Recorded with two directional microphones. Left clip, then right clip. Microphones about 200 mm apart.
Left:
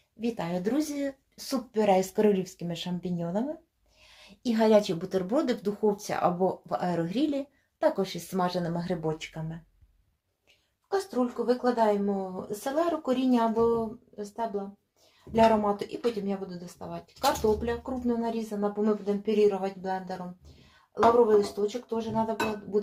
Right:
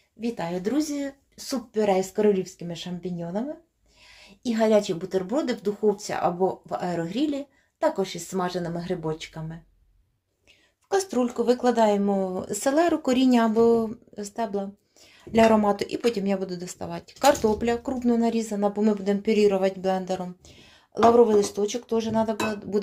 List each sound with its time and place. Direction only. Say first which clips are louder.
0.2 s speech: right 2 dB; 10° right (ahead or behind)
10.8 s speech: right 4 dB; 50° right (ahead or behind)
21.7 s speech: right 6 dB; 55° right (ahead or behind)